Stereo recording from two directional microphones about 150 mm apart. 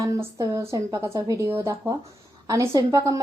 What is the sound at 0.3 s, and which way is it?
A woman's voice, 20° right (ahead or behind).